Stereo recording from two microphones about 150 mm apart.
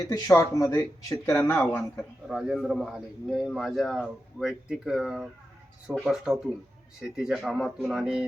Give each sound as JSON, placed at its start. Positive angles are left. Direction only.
{"t": 0.1, "sound": "a man's voice", "side_deg": 20}